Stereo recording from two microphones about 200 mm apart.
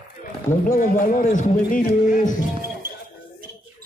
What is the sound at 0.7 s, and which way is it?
A man's voice, 45° left (ahead or behind).